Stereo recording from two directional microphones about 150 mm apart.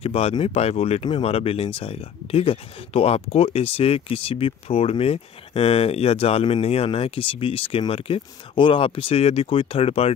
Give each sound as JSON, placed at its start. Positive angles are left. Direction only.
{"t": 0.0, "sound": "speech", "side_deg": 40}